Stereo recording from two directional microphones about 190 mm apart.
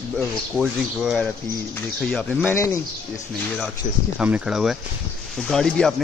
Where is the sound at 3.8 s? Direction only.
45° left (ahead or behind).